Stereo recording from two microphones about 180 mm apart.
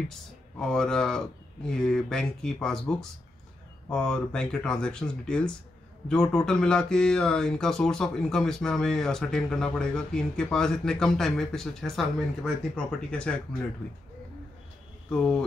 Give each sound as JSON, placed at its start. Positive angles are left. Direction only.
{"t": 0.6, "sound": "speech", "side_deg": 5}
{"t": 15.0, "sound": "speech", "side_deg": 5}